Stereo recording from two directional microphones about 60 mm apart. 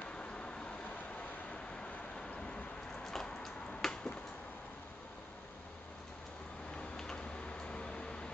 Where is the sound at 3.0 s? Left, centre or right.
Centre.